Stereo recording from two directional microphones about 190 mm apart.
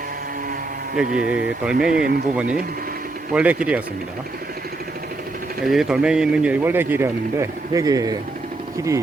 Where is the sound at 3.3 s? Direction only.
5° right (ahead or behind).